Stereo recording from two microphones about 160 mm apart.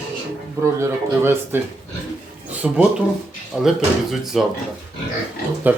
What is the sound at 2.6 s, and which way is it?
A man's voice, 10° right (ahead or behind).